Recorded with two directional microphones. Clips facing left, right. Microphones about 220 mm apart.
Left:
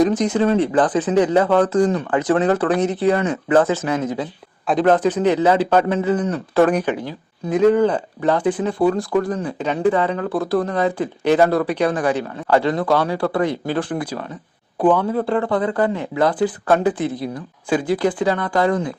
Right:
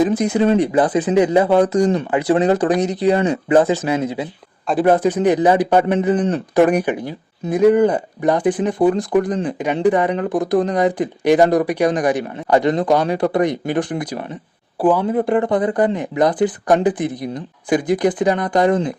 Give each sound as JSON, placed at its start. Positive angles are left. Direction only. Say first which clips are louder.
{"t": 0.0, "sound": "speech", "louder": "right 1 dB", "side_deg": -10}